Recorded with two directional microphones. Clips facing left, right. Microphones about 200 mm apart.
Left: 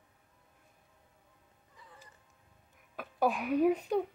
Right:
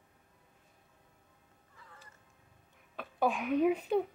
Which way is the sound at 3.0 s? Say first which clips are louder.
Left 1 dB; 5° left (ahead or behind).